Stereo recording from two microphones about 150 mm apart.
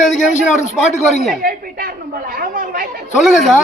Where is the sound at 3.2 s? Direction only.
Centre (ahead or behind).